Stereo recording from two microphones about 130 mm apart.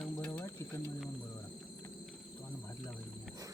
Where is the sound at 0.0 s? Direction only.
10° left (ahead or behind).